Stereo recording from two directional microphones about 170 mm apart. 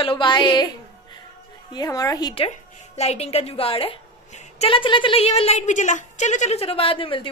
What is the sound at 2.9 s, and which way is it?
A woman's voice, 40° left (ahead or behind).